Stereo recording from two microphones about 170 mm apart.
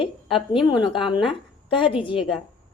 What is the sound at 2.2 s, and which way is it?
Speech, centre (ahead or behind).